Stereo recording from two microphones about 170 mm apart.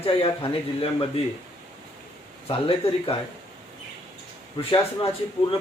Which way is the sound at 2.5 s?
35° left (ahead or behind).